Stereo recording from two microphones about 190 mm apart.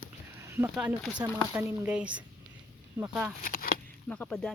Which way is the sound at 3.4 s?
50° left (ahead or behind).